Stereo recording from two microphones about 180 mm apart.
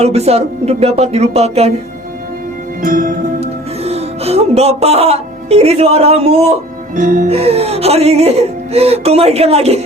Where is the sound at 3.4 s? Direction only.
35° right (ahead or behind).